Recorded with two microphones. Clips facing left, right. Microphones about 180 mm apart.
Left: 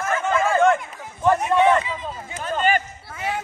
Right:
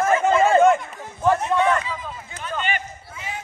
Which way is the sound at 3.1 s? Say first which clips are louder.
Left 7 dB; 60° left (ahead or behind).